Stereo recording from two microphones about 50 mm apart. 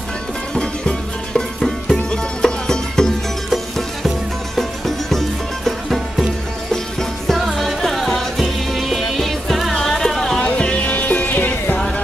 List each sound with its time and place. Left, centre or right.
0.6 s music: centre
3.4 s music: centre
10.4 s music: left
10.9 s music: left